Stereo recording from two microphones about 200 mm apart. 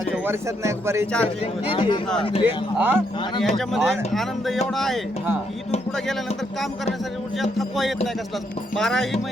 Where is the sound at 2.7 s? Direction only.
10° right (ahead or behind).